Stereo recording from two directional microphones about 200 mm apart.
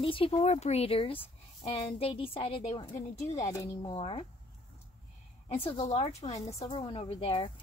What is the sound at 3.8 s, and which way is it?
Speech, 25° left (ahead or behind).